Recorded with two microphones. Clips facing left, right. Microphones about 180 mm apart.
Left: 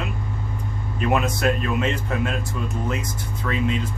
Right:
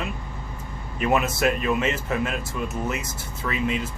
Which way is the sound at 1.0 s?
5° right (ahead or behind).